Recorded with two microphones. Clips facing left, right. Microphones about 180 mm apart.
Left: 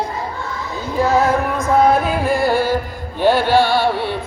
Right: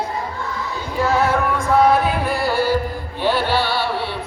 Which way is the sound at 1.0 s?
40° left (ahead or behind).